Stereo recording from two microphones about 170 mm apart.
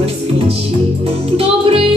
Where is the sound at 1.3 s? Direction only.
35° right (ahead or behind).